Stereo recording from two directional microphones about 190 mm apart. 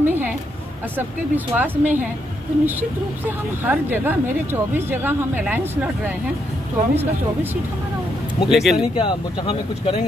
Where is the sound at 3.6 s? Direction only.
10° right (ahead or behind).